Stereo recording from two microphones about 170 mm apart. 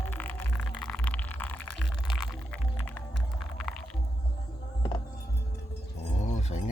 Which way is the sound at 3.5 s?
5° left (ahead or behind).